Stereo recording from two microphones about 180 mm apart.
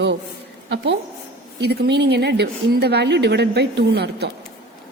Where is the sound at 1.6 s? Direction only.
65° right (ahead or behind).